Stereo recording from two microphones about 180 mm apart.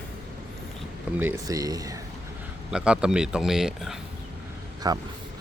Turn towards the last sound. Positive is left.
turn(degrees=-20)  # may be behind; listen again after turning